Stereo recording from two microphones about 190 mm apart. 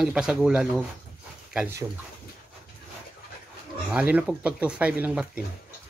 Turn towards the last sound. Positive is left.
turn(degrees=-10)  # may be behind; listen again after turning